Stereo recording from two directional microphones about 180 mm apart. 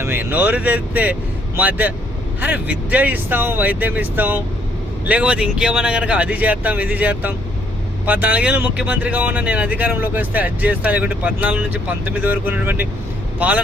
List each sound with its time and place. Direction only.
0.0 s speech: 10° right (ahead or behind)